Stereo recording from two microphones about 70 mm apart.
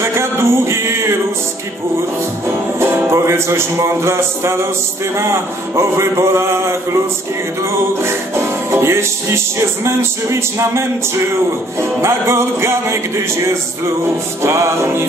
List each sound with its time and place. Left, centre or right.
0.0 s music: right
2.4 s music: right
8.0 s music: right